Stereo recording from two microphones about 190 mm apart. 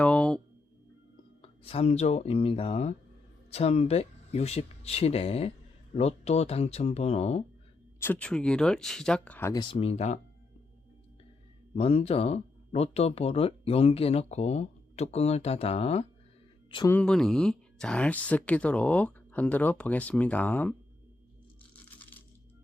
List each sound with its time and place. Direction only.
0.0 s a sound: 5° left (ahead or behind)
1.4 s speech: 30° left (ahead or behind)
7.9 s speech: 10° left (ahead or behind)
9.7 s speech: 35° left (ahead or behind)
11.7 s speech: 30° left (ahead or behind)
16.9 s speech: 5° left (ahead or behind)